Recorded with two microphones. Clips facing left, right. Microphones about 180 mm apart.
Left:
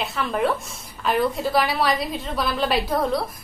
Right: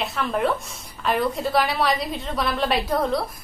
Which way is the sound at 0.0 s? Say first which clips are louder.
Even; centre (ahead or behind).